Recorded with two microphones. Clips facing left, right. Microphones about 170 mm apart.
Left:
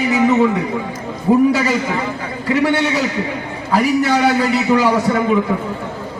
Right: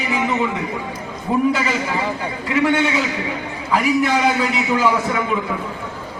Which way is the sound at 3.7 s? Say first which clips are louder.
Left 2 dB; 40° left (ahead or behind).